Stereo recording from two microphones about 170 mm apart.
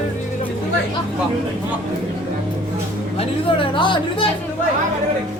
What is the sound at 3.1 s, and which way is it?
Speech, 30° left (ahead or behind).